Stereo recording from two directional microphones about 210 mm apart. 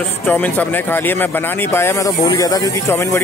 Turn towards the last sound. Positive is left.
turn(degrees=15)  # may be behind; listen again after turning